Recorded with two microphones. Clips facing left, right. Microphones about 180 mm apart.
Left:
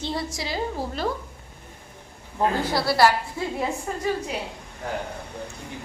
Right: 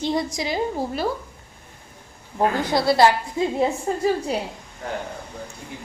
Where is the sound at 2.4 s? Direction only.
20° right (ahead or behind).